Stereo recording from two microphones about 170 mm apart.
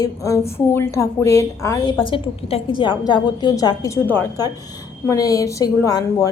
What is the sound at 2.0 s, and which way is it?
A woman's voice, 30° left (ahead or behind).